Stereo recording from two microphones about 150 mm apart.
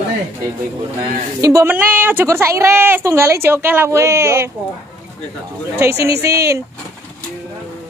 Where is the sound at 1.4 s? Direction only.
20° right (ahead or behind).